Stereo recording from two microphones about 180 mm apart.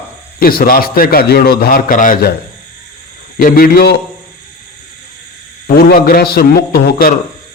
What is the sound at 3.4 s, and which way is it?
Speech, 55° left (ahead or behind).